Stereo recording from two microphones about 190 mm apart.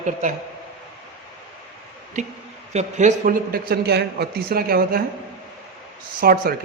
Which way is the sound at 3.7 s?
60° right (ahead or behind).